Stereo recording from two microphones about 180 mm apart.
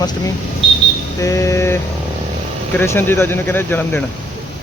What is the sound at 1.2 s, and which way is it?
Speech, 15° left (ahead or behind).